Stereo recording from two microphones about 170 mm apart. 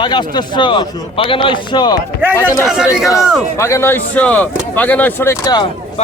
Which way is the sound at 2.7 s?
5° right (ahead or behind).